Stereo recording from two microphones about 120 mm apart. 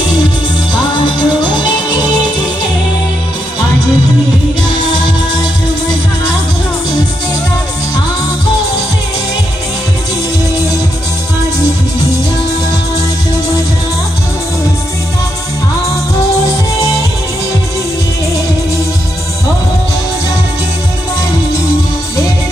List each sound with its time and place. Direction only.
0.9 s music: 40° left (ahead or behind)